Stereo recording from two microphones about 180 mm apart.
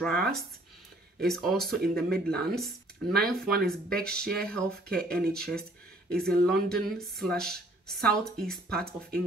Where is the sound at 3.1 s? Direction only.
60° right (ahead or behind).